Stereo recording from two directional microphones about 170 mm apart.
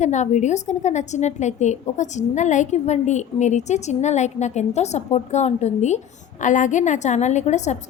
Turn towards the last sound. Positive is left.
turn(degrees=40)  # may be behind; listen again after turning